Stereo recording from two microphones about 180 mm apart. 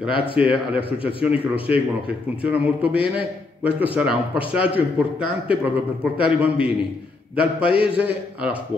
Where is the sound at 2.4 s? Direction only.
10° right (ahead or behind).